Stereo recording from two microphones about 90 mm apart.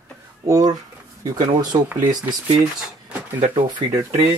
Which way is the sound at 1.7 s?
60° right (ahead or behind).